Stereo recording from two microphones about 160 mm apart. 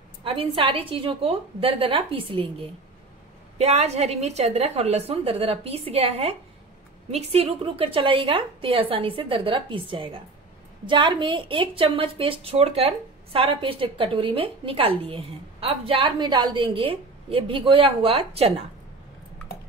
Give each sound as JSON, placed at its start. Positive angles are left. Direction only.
{"t": 0.2, "sound": "a woman's voice", "side_deg": -35}